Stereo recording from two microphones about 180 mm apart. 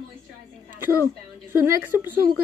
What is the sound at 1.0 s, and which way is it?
A woman's voice, 10° right (ahead or behind).